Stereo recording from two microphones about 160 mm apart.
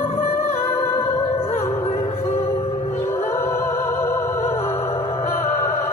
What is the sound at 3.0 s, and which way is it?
Music, 15° left (ahead or behind).